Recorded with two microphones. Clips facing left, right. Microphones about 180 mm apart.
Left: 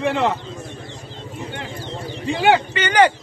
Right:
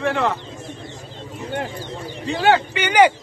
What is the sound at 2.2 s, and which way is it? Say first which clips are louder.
Speech: left 1 dB; 15° left (ahead or behind).